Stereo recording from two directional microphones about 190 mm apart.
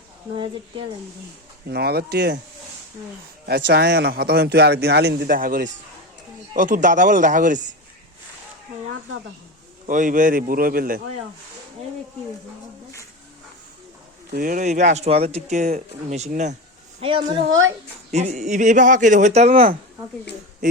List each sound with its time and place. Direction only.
1.6 s speech: 55° right (ahead or behind)
3.4 s speech: 60° right (ahead or behind); by 7.6 s 45° right (ahead or behind)
9.8 s speech: 40° right (ahead or behind)
14.3 s speech: 45° right (ahead or behind)
17.0 s a woman's voice: 30° right (ahead or behind)